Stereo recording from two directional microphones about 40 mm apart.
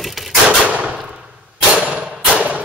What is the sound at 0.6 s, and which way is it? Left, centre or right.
Gunshot, right.